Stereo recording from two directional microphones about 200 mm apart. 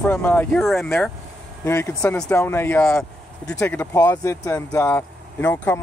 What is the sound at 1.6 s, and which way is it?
Speech, 15° left (ahead or behind).